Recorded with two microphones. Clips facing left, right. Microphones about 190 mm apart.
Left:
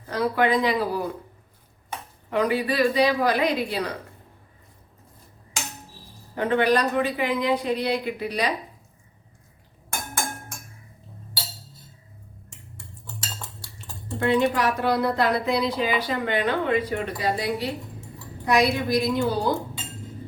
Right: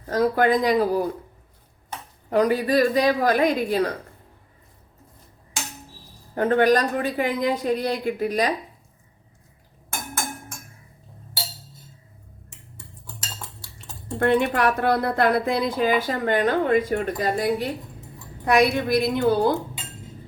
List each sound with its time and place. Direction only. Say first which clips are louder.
0.1 s speech: right 3 dB; 45° right (ahead or behind)
2.3 s speech: right 4 dB; 40° right (ahead or behind)
6.3 s speech: right 3 dB; 45° right (ahead or behind)
14.2 s a woman's voice: right 1 dB; 55° right (ahead or behind)